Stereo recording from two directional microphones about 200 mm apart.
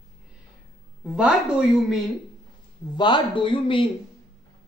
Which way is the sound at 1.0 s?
5° right (ahead or behind).